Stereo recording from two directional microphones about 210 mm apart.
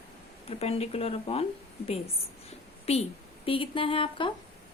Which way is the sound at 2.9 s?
30° left (ahead or behind).